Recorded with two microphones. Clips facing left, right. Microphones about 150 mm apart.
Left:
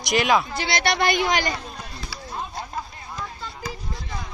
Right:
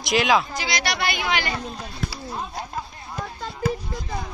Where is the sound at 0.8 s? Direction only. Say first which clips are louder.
Left 7 dB; 50° left (ahead or behind).